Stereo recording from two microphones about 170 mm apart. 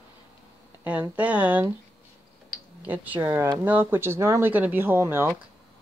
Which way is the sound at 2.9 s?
10° right (ahead or behind).